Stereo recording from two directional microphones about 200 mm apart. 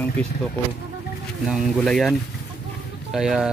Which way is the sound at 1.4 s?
Centre (ahead or behind).